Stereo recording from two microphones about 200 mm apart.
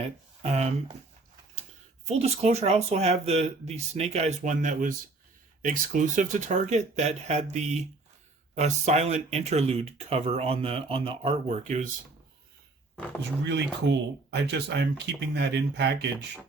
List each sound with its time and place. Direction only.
0.0 s speech: 35° right (ahead or behind)
2.0 s speech: 30° right (ahead or behind)
13.4 s speech: 60° right (ahead or behind)